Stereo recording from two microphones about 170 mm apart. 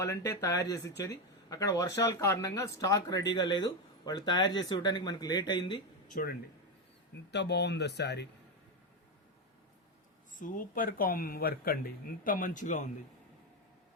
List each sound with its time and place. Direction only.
0.0 s speech: 20° left (ahead or behind)
6.1 s speech: 55° left (ahead or behind)
7.3 s speech: 90° left
10.3 s speech: 50° left (ahead or behind)